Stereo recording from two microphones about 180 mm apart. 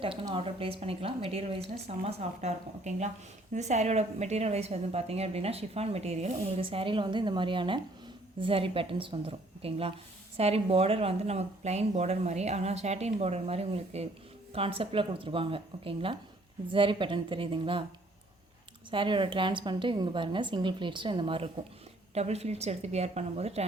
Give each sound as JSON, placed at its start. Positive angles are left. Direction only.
{"t": 0.0, "sound": "a woman's voice", "side_deg": -30}
{"t": 18.9, "sound": "a woman's voice", "side_deg": -25}